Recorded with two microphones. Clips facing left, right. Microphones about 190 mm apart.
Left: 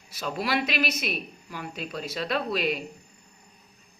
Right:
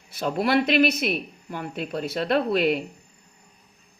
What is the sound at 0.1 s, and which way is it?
A woman's voice, 55° right (ahead or behind).